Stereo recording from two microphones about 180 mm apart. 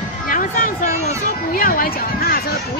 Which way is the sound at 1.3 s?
55° left (ahead or behind).